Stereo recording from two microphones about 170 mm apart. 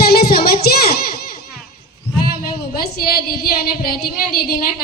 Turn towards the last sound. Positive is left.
turn(degrees=65)  # may be behind; listen again after turning